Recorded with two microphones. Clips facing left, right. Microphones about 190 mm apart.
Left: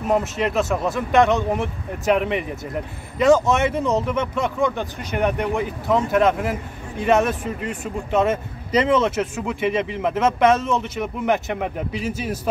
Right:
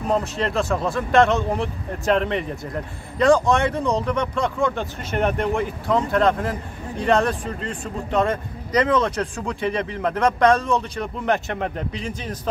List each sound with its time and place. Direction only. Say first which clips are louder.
0.1 s speech: left 2 dB; 15° left (ahead or behind)
7.0 s speech: left 1 dB; 20° left (ahead or behind)